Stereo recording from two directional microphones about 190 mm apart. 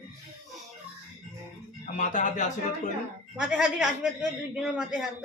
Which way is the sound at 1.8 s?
40° left (ahead or behind).